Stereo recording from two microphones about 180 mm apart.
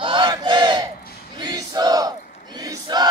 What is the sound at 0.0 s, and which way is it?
Battle cry, 25° right (ahead or behind).